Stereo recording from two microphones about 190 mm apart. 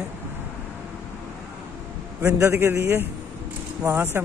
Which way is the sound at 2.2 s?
15° right (ahead or behind).